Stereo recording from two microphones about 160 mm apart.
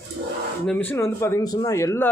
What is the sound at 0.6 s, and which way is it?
Speech, 10° left (ahead or behind).